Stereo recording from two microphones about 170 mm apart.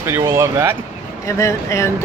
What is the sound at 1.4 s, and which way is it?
Speech, 15° left (ahead or behind).